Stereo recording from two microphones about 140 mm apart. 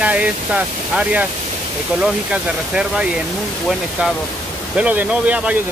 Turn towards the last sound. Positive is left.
turn(degrees=-10)  # may be behind; listen again after turning